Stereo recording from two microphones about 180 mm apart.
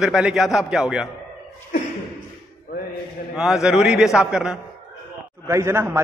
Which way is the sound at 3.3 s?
5° right (ahead or behind).